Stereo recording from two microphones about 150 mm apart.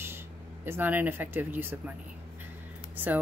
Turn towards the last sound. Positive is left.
turn(degrees=-10)  # may be behind; listen again after turning